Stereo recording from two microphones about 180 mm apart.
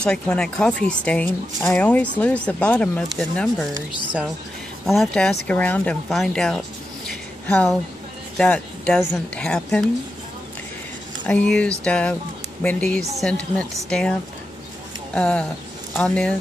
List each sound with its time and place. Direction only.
0.0 s speech: 5° left (ahead or behind)
4.8 s speech: centre (ahead or behind)
11.2 s speech: 5° left (ahead or behind)
15.1 s speech: 5° left (ahead or behind)